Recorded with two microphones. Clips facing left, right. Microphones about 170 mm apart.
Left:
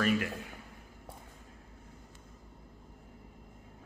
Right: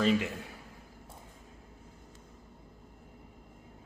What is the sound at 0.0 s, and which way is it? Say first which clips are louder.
Speech: right 2 dB; 20° right (ahead or behind).